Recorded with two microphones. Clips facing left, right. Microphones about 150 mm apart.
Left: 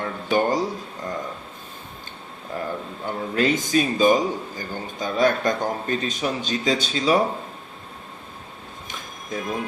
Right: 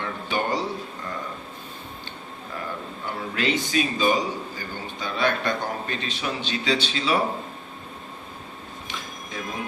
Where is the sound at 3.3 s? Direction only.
45° left (ahead or behind).